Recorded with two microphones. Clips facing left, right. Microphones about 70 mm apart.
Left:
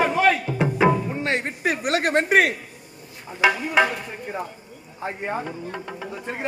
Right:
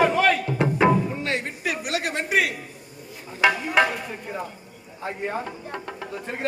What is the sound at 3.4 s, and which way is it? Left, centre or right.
Speech, centre.